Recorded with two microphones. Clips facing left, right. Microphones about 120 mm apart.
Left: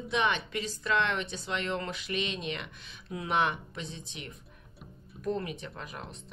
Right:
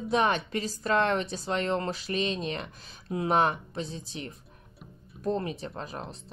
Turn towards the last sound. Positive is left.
turn(degrees=-35)  # may be behind; listen again after turning